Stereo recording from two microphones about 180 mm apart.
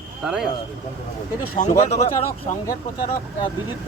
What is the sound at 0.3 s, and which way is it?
Speech, 5° right (ahead or behind).